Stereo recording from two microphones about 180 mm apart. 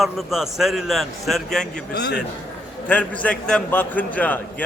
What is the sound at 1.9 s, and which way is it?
Speech, 70° left (ahead or behind).